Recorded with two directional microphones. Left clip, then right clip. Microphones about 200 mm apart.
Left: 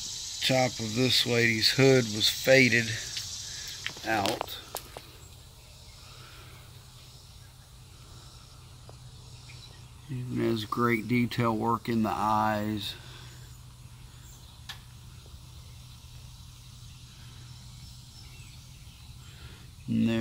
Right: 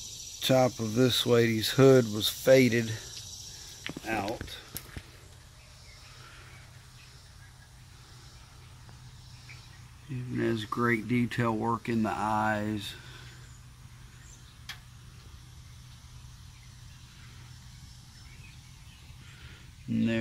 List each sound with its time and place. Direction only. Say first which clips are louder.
0.4 s speech: right 1 dB; 35° right (ahead or behind)
3.8 s a sound: left 4 dB; centre (ahead or behind)
10.3 s speech: left 1 dB; 5° right (ahead or behind)
19.9 s speech: left 1 dB; centre (ahead or behind)